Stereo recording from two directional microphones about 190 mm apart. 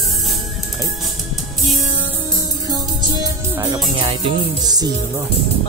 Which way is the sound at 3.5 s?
20° right (ahead or behind).